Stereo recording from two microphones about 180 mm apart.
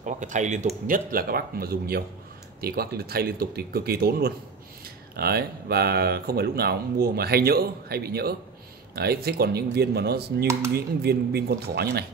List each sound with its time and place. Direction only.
0.0 s speech: 45° right (ahead or behind); by 10.2 s 60° right (ahead or behind)
10.4 s speech: 15° right (ahead or behind)
10.7 s speech: 60° right (ahead or behind)